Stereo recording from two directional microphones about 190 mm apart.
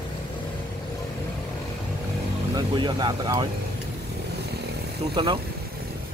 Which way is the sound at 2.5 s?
20° right (ahead or behind).